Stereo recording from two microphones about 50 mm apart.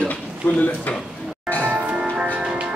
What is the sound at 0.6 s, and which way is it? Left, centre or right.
Speech, left.